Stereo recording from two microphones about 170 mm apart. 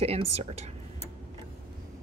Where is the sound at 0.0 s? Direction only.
35° right (ahead or behind).